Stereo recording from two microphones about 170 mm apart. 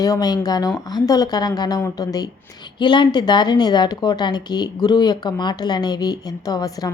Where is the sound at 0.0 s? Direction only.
20° left (ahead or behind).